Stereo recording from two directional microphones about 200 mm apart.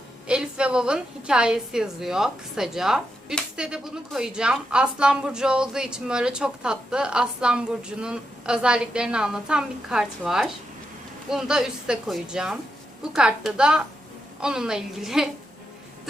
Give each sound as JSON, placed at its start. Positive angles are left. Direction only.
{"t": 0.3, "sound": "a woman's voice", "side_deg": -5}